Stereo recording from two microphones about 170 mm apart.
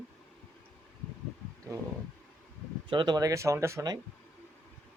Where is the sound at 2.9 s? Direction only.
25° right (ahead or behind).